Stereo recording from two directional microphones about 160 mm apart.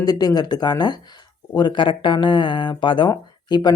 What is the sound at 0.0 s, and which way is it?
Speech, 25° left (ahead or behind).